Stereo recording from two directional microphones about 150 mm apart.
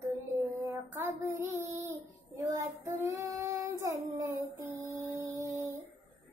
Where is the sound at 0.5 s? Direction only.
20° right (ahead or behind).